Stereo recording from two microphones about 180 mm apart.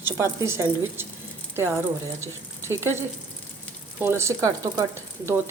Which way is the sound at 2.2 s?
15° right (ahead or behind).